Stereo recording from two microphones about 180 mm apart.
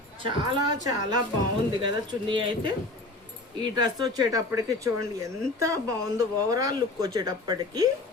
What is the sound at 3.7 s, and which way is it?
Speech, 20° right (ahead or behind).